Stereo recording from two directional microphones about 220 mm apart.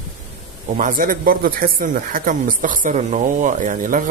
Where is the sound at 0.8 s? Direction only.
40° right (ahead or behind).